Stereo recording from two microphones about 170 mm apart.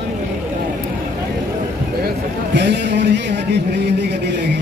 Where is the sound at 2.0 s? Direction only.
85° right.